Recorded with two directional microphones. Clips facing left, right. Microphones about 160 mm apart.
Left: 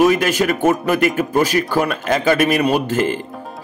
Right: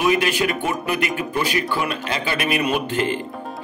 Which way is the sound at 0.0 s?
40° left (ahead or behind).